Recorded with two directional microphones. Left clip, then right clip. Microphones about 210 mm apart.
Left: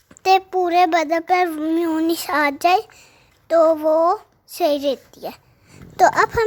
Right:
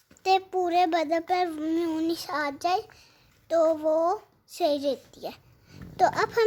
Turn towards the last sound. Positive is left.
turn(degrees=20)  # may be behind; listen again after turning